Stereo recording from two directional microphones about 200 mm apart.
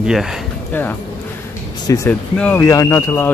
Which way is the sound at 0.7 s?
10° left (ahead or behind).